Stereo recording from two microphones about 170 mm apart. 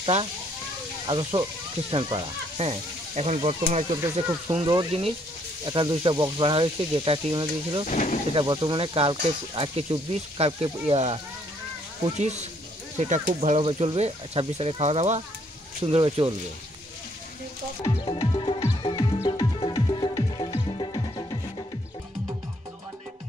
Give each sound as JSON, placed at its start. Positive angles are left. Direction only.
{"t": 0.0, "sound": "speech", "side_deg": -30}
{"t": 4.5, "sound": "speech", "side_deg": -30}
{"t": 7.9, "sound": "speech", "side_deg": 50}
{"t": 8.4, "sound": "speech", "side_deg": -25}
{"t": 12.2, "sound": "speech", "side_deg": -40}
{"t": 18.0, "sound": "music", "side_deg": 30}